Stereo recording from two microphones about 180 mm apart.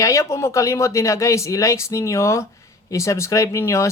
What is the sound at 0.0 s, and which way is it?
Speech, 15° left (ahead or behind).